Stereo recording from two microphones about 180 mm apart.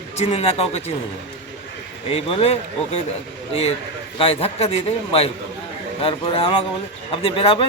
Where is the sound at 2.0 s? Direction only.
30° left (ahead or behind).